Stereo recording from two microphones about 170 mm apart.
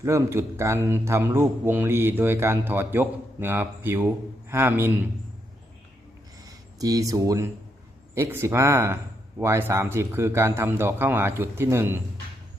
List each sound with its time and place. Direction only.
0.0 s a man's voice: 15° right (ahead or behind)
6.4 s a man's voice: 20° right (ahead or behind)